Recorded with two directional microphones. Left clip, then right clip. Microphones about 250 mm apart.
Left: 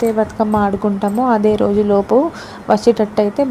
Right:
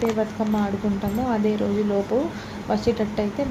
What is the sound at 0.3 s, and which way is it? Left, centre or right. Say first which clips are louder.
Speech: left 10 dB; left.